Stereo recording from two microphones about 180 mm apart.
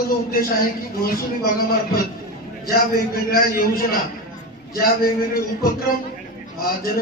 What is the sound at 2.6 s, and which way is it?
A man's voice, 55° left (ahead or behind).